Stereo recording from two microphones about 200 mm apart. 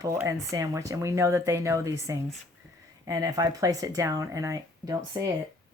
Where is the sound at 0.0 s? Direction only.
15° right (ahead or behind).